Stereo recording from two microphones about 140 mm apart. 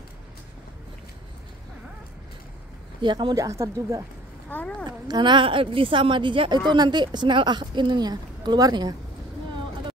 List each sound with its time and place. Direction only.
3.0 s speech: 35° right (ahead or behind)
4.5 s a sound: 10° left (ahead or behind)
4.8 s a woman's voice: 30° right (ahead or behind)